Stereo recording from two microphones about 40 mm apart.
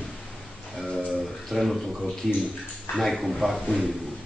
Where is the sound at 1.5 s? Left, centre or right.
Centre.